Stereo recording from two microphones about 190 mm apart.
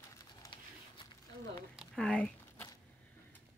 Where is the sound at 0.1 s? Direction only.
20° left (ahead or behind).